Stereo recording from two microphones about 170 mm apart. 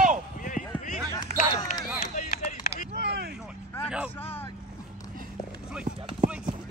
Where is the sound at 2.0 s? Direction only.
45° left (ahead or behind).